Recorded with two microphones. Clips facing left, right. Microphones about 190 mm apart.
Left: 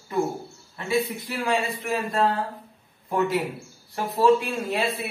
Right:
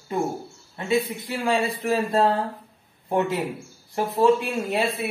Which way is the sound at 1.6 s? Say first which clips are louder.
Right 4 dB; 30° right (ahead or behind).